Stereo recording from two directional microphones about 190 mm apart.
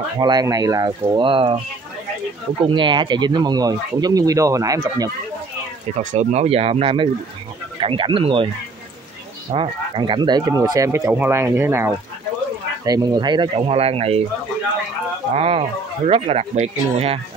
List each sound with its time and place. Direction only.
0.2 s speech: 20° right (ahead or behind)
2.6 s speech: 25° right (ahead or behind)
6.1 s speech: 35° right (ahead or behind)
9.5 s speech: 25° right (ahead or behind)
15.3 s speech: 30° right (ahead or behind)